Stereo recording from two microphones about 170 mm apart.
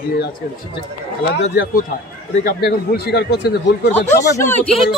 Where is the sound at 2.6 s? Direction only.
70° left (ahead or behind).